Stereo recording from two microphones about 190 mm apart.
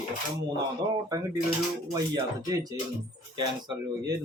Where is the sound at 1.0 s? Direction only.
15° right (ahead or behind).